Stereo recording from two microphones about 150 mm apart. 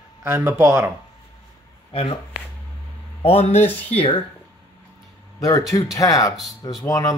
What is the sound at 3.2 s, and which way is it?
Speech, 45° left (ahead or behind).